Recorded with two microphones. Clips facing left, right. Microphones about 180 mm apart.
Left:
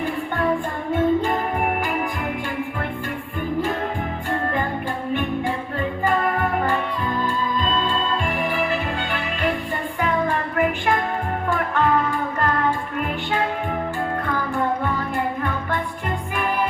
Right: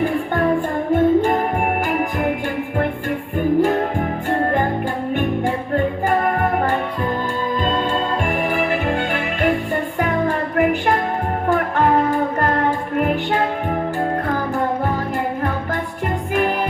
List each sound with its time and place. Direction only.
0.9 s music: 40° right (ahead or behind)
3.6 s music: 45° right (ahead or behind)
5.7 s music: 45° right (ahead or behind)